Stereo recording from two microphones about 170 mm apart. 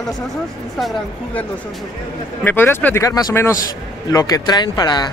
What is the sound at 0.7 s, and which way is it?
Speech, centre (ahead or behind).